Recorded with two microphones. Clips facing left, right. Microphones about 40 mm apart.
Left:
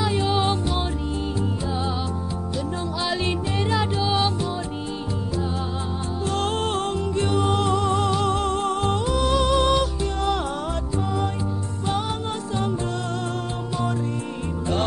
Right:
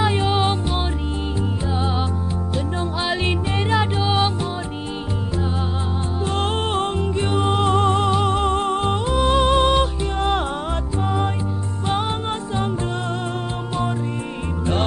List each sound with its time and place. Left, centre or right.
0.0 s music: right
3.0 s music: right
6.2 s music: right
11.9 s music: right